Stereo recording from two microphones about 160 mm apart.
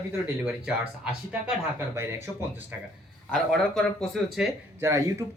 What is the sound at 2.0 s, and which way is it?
Speech, 15° right (ahead or behind).